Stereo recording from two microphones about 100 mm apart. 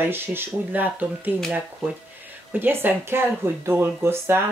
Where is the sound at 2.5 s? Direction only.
20° right (ahead or behind).